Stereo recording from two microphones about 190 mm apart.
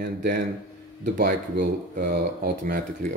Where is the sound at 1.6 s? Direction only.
50° right (ahead or behind).